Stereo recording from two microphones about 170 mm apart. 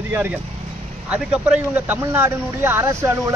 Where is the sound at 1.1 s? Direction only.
5° right (ahead or behind).